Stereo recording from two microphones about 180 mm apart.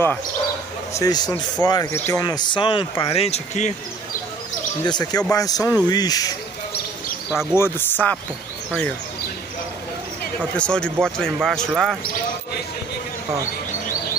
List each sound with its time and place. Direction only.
0.9 s speech: 20° left (ahead or behind); by 3.7 s 40° left (ahead or behind)
4.8 s speech: 25° left (ahead or behind)
7.3 s speech: 15° left (ahead or behind)
10.5 s speech: 5° left (ahead or behind)